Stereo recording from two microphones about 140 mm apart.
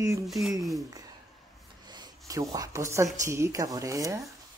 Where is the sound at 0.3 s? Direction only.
Centre (ahead or behind).